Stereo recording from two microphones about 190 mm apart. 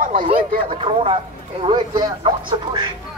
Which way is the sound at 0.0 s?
45° right (ahead or behind).